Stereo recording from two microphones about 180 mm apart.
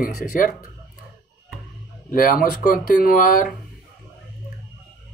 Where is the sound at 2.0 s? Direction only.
50° left (ahead or behind).